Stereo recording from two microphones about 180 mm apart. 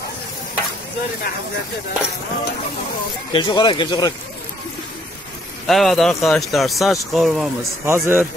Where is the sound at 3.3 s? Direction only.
25° left (ahead or behind).